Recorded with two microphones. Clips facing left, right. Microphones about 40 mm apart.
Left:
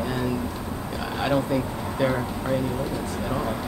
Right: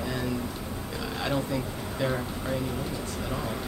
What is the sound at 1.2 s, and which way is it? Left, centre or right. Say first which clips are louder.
Speech: left 6 dB; centre.